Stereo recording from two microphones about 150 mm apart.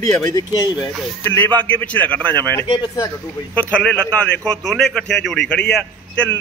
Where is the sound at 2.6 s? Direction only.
30° left (ahead or behind).